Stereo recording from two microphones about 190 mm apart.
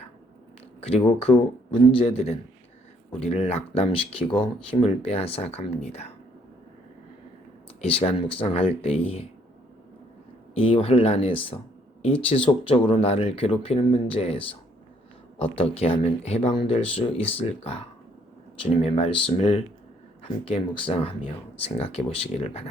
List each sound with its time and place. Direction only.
0.8 s speech: 30° left (ahead or behind)
7.8 s speech: 30° left (ahead or behind)
10.5 s speech: 30° left (ahead or behind)